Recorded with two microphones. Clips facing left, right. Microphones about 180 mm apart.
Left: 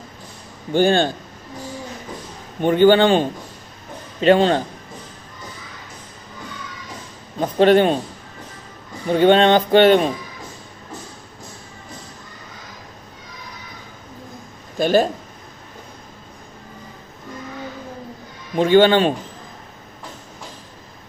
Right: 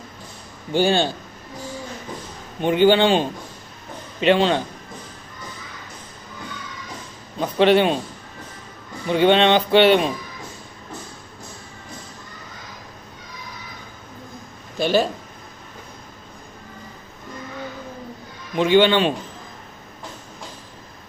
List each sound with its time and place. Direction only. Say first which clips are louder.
0.7 s speech: left 3 dB; 50° left (ahead or behind)
2.8 s speech: left 3 dB; 50° left (ahead or behind)
7.3 s speech: left 2 dB; 45° left (ahead or behind)
9.0 s speech: left 2 dB; 45° left (ahead or behind)
14.8 s speech: left 3 dB; 45° left (ahead or behind)
18.5 s speech: left 3 dB; 45° left (ahead or behind)